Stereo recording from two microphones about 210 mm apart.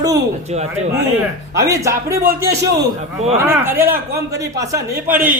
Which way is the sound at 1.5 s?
15° right (ahead or behind).